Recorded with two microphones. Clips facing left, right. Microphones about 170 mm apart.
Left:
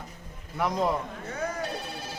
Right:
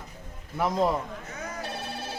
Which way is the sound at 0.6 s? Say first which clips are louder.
Right 2 dB; centre (ahead or behind).